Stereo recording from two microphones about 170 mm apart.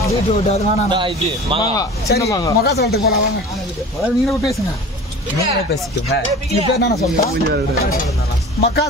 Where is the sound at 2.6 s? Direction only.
70° left (ahead or behind).